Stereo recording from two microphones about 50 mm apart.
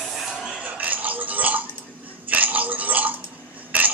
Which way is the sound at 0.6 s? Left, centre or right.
Right.